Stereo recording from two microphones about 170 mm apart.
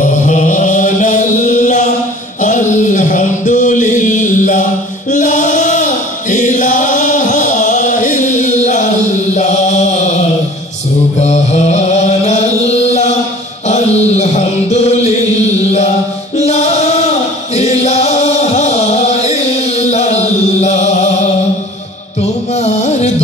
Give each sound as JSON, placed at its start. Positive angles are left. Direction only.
{"t": 0.2, "sound": "chant", "side_deg": 45}
{"t": 2.4, "sound": "mantra", "side_deg": 45}
{"t": 5.1, "sound": "music", "side_deg": 45}
{"t": 6.3, "sound": "chant", "side_deg": 45}
{"t": 11.1, "sound": "mantra", "side_deg": 40}
{"t": 14.1, "sound": "music", "side_deg": 40}
{"t": 22.6, "sound": "music", "side_deg": 40}